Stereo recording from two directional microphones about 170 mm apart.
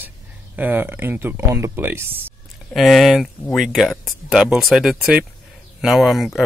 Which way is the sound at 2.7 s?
Centre (ahead or behind).